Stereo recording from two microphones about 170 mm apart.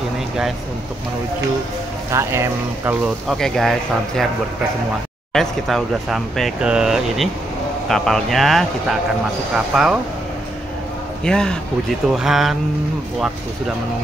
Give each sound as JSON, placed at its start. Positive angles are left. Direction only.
{"t": 2.0, "sound": "speech", "side_deg": -15}
{"t": 3.3, "sound": "speech", "side_deg": 0}
{"t": 5.3, "sound": "speech", "side_deg": 0}
{"t": 9.7, "sound": "speech", "side_deg": 0}
{"t": 11.2, "sound": "speech", "side_deg": 5}